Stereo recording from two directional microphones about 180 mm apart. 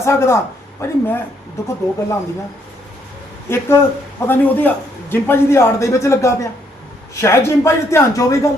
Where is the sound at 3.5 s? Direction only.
15° left (ahead or behind).